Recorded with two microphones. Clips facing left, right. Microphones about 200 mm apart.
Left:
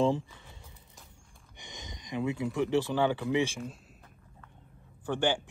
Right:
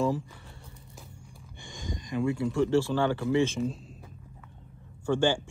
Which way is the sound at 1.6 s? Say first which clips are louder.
Right 8 dB; 20° left (ahead or behind).